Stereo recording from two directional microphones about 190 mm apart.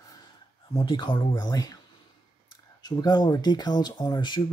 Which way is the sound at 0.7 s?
25° left (ahead or behind).